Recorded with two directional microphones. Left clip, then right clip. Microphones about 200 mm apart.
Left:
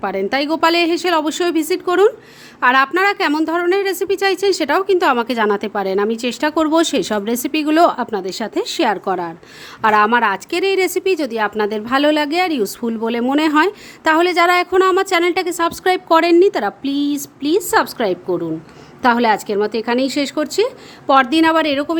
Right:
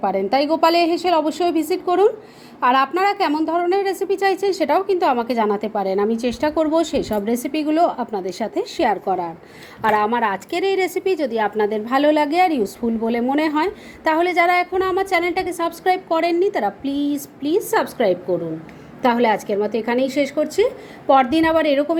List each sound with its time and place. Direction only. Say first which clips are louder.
0.0 s a woman's voice: even; 20° left (ahead or behind)